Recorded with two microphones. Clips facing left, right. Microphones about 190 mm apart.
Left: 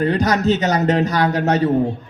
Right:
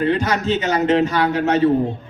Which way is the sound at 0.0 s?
40° left (ahead or behind).